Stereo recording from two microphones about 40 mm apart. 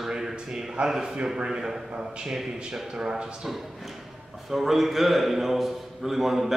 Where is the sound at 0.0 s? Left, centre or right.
Centre.